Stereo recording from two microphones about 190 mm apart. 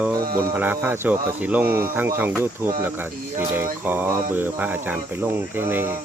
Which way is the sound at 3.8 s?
10° right (ahead or behind).